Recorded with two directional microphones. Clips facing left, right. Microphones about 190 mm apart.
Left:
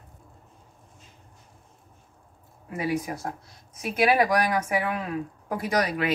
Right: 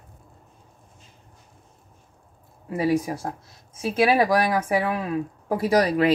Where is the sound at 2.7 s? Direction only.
30° right (ahead or behind).